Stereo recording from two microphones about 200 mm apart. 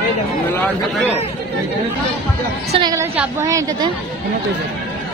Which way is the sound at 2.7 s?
20° right (ahead or behind).